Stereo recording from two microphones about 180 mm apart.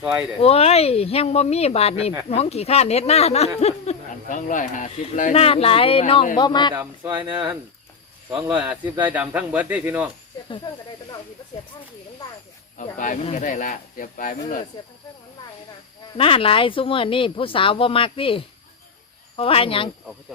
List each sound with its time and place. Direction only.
0.0 s speech: 10° right (ahead or behind)
0.3 s speech: 35° left (ahead or behind)
6.7 s speech: 10° right (ahead or behind)
8.8 s speech: 25° right (ahead or behind)
9.1 s speech: 10° right (ahead or behind)
12.7 s speech: 45° left (ahead or behind)
16.1 s speech: 30° left (ahead or behind)